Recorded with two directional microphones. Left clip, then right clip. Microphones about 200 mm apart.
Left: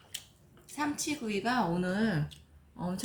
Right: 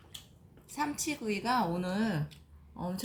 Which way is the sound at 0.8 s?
35° right (ahead or behind).